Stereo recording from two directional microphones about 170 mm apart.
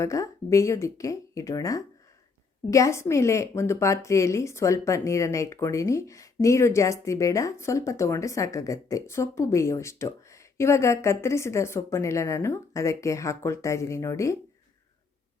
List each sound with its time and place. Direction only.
0.0 s a woman's voice: 20° left (ahead or behind)